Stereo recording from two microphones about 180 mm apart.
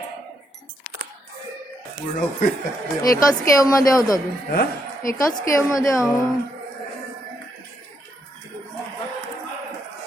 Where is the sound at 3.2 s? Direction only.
20° left (ahead or behind).